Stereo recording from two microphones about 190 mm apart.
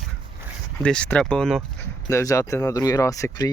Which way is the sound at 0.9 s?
5° left (ahead or behind).